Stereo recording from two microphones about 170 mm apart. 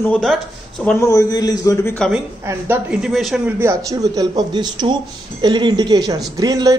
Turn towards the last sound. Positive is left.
turn(degrees=-20)  # may be behind; listen again after turning